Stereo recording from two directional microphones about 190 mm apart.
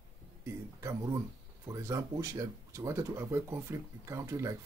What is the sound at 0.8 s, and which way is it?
Speech, 15° right (ahead or behind).